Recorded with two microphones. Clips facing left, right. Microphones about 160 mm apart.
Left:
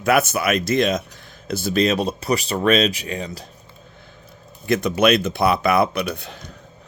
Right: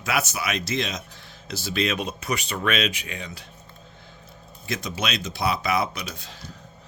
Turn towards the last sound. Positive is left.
turn(degrees=60)  # may be behind; listen again after turning